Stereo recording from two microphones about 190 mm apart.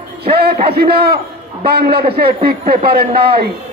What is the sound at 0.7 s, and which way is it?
Speech, 55° right (ahead or behind).